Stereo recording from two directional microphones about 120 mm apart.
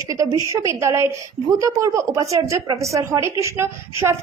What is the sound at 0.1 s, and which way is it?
A woman's voice, 35° right (ahead or behind).